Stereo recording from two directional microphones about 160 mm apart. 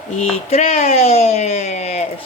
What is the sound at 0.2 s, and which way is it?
A woman's voice, 40° left (ahead or behind).